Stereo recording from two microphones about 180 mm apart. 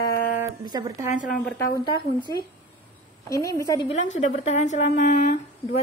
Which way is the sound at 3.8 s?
40° left (ahead or behind).